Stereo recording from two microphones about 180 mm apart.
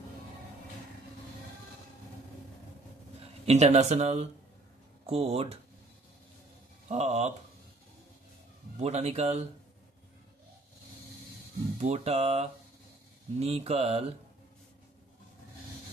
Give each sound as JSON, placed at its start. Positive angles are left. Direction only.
{"t": 3.2, "sound": "a man's voice", "side_deg": -40}
{"t": 6.9, "sound": "a man's voice", "side_deg": -35}
{"t": 8.7, "sound": "a man's voice", "side_deg": -35}
{"t": 11.8, "sound": "a man's voice", "side_deg": -35}